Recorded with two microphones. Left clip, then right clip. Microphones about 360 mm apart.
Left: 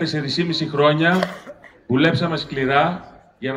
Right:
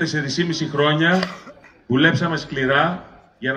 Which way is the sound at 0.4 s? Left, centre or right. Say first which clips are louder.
Left 3 dB; centre.